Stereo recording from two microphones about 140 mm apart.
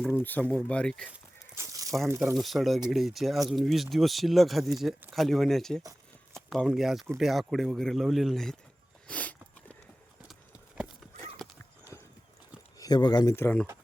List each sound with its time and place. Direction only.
0.0 s speech: 10° left (ahead or behind)
1.1 s tearing: 20° right (ahead or behind)
2.3 s speech: centre (ahead or behind)
9.0 s a sound: 10° left (ahead or behind)
10.2 s clip-clop: 5° right (ahead or behind)
11.4 s horse: centre (ahead or behind)
12.8 s speech: 30° left (ahead or behind)
13.4 s speech: 10° left (ahead or behind)